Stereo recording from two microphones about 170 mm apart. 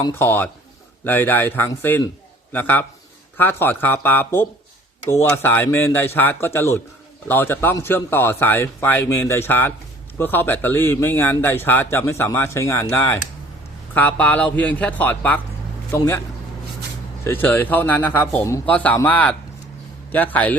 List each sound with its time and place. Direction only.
0.0 s a man's voice: 15° left (ahead or behind)
17.2 s a man's voice: 10° left (ahead or behind)